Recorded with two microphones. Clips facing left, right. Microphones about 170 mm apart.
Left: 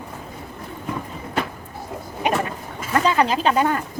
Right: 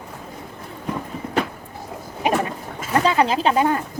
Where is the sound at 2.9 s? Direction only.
25° right (ahead or behind).